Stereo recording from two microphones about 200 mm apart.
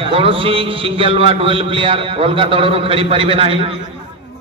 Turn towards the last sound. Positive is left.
turn(degrees=-30)  # may be behind; listen again after turning